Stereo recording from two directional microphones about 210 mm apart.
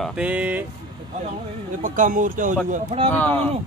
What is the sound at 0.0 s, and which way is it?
Vehicle, 5° right (ahead or behind).